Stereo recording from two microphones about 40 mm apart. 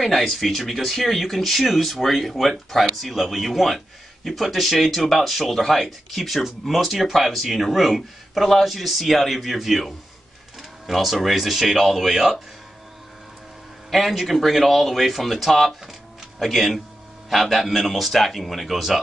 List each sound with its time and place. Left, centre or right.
0.0 s speech: centre
13.8 s speech: centre